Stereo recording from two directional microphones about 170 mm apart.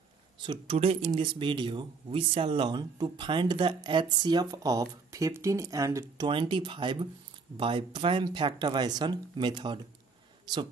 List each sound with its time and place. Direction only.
0.4 s speech: 30° right (ahead or behind)